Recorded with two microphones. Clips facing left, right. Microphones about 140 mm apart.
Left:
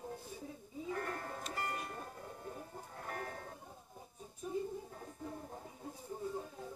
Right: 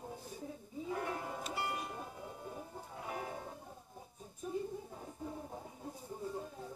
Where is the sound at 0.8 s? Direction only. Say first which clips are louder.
Right 2 dB; 10° right (ahead or behind).